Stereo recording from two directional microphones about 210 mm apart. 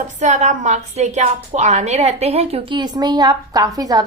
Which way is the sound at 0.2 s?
35° right (ahead or behind).